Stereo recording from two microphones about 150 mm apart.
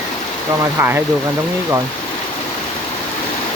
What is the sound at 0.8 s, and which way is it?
Speech, 15° right (ahead or behind).